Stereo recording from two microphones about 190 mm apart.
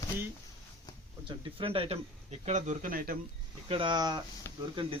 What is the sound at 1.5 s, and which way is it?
Speech, 30° right (ahead or behind).